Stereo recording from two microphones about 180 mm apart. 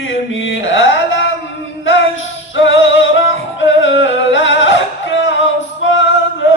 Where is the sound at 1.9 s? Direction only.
90° left.